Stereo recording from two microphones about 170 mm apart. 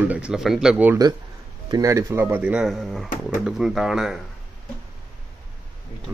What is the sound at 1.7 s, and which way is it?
Speech, 20° right (ahead or behind).